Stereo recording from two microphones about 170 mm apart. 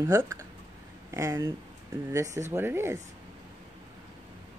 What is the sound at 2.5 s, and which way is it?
Speech, 15° right (ahead or behind).